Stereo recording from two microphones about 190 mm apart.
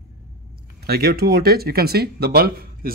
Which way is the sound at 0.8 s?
55° right (ahead or behind).